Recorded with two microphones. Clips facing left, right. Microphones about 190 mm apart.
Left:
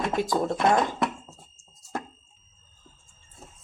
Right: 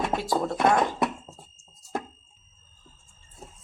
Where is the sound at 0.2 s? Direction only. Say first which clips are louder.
Left 2 dB; 15° left (ahead or behind).